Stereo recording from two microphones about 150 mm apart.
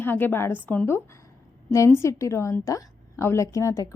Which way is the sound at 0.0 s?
15° left (ahead or behind).